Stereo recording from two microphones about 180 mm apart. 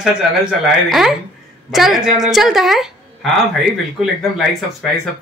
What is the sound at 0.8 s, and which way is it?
A woman's voice, centre (ahead or behind).